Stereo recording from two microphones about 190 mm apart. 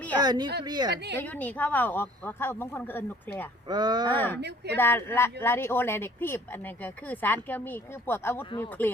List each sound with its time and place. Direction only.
0.2 s speech: 20° right (ahead or behind)
1.2 s speech: 10° left (ahead or behind)
3.7 s speech: 20° right (ahead or behind)
4.1 s speech: 10° left (ahead or behind)
4.4 s speech: 60° right (ahead or behind)
4.8 s speech: 10° left (ahead or behind)